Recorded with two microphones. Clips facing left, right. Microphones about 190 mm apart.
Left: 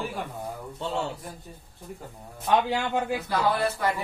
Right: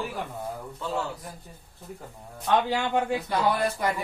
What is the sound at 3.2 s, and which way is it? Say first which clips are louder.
Speech: even; 15° right (ahead or behind).